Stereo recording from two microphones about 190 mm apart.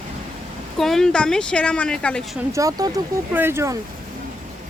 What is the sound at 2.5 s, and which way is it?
Speech, 15° right (ahead or behind).